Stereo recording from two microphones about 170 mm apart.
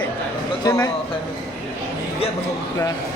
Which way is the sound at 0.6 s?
15° left (ahead or behind).